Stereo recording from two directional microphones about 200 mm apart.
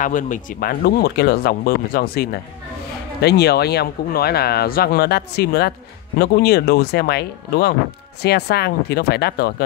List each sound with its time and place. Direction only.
0.0 s speech: 40° left (ahead or behind)